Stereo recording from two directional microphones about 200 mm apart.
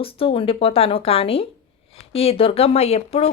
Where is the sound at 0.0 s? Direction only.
30° left (ahead or behind).